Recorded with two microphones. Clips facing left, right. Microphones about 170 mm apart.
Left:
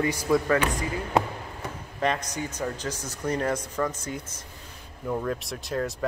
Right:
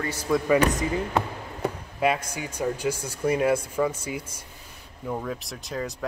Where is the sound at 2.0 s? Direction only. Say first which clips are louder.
Right 2 dB; 10° right (ahead or behind).